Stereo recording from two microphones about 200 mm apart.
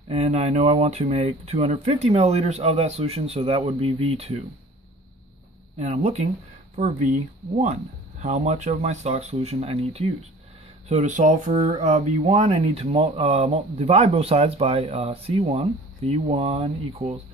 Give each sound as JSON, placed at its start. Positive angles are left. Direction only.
{"t": 0.1, "sound": "speech", "side_deg": -30}
{"t": 5.8, "sound": "speech", "side_deg": -35}